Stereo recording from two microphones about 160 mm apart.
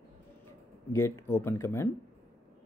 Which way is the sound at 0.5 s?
15° left (ahead or behind).